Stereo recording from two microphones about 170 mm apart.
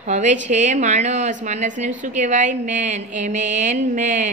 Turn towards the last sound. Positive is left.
turn(degrees=-45)  # may be behind; listen again after turning